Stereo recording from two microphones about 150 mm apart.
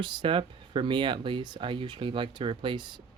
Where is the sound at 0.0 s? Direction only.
30° right (ahead or behind).